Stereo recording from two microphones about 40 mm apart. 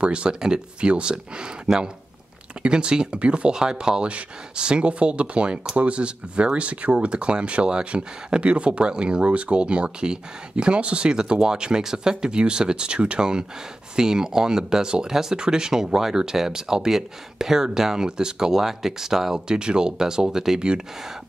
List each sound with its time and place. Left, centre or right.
0.0 s speech: right